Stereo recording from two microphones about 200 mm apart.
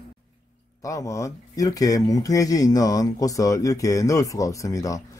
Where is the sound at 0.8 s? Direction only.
15° left (ahead or behind).